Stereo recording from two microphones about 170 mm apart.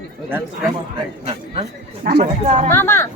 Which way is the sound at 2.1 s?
40° right (ahead or behind).